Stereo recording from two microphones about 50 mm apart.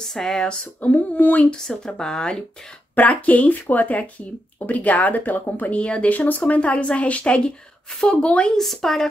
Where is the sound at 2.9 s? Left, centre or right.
Left.